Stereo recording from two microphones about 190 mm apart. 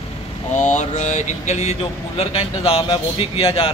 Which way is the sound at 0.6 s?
40° left (ahead or behind).